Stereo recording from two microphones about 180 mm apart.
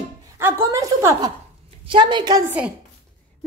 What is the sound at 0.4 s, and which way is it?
A woman's voice, 15° right (ahead or behind).